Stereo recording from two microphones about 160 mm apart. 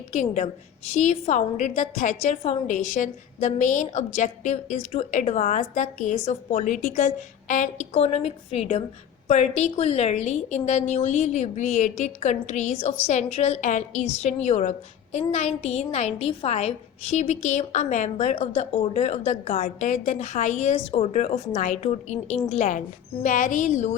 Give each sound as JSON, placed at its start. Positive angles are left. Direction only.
{"t": 0.1, "sound": "a woman's voice", "side_deg": 50}